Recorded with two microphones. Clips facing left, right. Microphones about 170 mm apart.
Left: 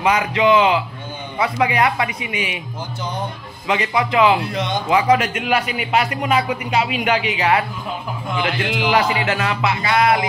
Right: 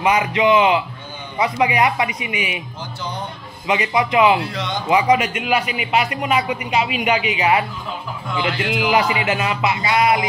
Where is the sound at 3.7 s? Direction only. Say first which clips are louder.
Right 1 dB; 15° right (ahead or behind).